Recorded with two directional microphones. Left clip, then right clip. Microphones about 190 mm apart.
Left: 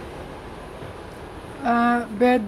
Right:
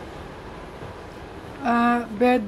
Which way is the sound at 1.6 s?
5° left (ahead or behind).